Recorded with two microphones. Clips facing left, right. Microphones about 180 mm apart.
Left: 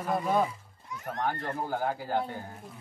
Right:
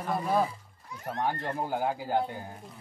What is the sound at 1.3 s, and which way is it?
Speech, 20° right (ahead or behind).